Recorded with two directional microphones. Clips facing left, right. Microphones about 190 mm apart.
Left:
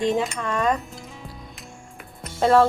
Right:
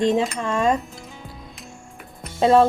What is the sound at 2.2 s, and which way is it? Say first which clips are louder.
Music: right 2 dB; 15° right (ahead or behind).